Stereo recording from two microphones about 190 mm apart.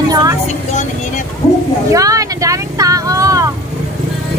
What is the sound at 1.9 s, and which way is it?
Vehicle, 15° right (ahead or behind).